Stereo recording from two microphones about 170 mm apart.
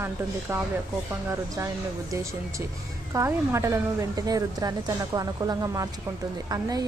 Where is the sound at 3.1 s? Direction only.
15° right (ahead or behind).